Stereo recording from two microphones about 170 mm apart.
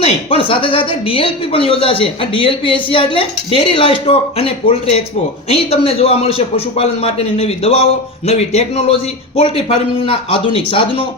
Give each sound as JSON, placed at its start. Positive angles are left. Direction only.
{"t": 0.0, "sound": "speech", "side_deg": 35}